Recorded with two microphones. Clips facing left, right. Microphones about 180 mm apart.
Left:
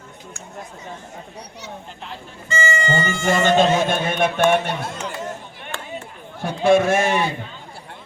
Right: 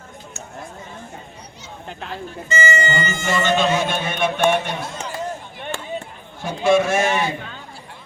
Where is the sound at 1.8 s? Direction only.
70° right (ahead or behind).